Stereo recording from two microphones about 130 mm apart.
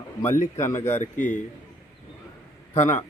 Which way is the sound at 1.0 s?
75° left (ahead or behind).